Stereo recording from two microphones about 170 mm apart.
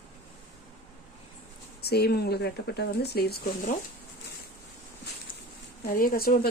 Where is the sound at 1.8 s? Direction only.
70° left (ahead or behind).